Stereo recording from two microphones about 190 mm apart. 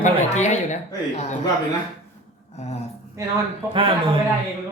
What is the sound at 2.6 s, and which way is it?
Speech, 35° left (ahead or behind).